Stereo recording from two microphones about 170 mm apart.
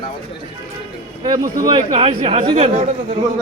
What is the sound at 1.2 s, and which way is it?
Speech, 25° right (ahead or behind).